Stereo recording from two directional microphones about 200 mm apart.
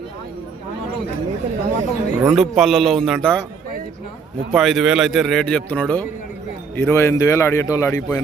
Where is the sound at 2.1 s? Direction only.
5° right (ahead or behind).